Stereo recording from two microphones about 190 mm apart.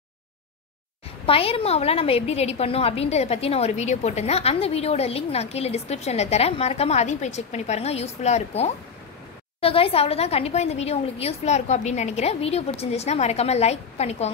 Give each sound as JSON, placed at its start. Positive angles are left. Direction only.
{"t": 1.2, "sound": "a woman's voice", "side_deg": 30}